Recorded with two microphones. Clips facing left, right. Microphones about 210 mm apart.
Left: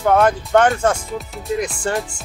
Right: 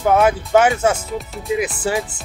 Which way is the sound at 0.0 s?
5° right (ahead or behind).